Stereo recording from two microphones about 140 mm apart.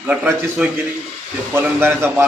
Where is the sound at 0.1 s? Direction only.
10° right (ahead or behind).